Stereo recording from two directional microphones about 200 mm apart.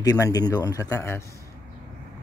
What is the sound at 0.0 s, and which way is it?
Speech, 15° left (ahead or behind).